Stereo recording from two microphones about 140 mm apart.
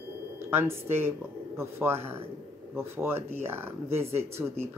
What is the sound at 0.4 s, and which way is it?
Speech, 15° right (ahead or behind).